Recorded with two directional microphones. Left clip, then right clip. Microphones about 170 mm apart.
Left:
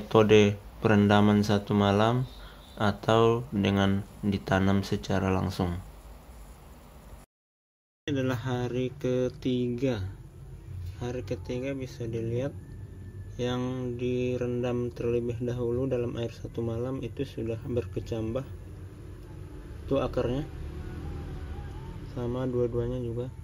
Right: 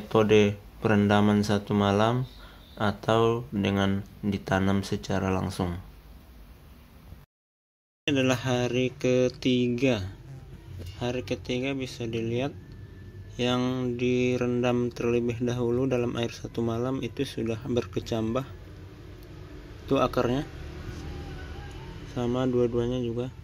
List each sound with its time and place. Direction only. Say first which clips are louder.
0.1 s mantra: left 1 dB; 5° left (ahead or behind)
8.0 s mantra: right 5 dB; centre (ahead or behind)
11.0 s speech: right 4 dB; 5° right (ahead or behind)
13.4 s mantra: right 4 dB; 5° right (ahead or behind)
19.9 s speech: right 4 dB; 10° right (ahead or behind)
22.1 s speech: right 4 dB; 10° right (ahead or behind)